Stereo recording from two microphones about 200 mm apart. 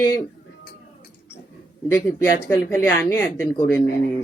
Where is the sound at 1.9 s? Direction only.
10° left (ahead or behind).